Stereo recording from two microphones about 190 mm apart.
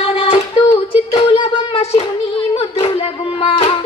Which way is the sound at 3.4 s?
30° left (ahead or behind).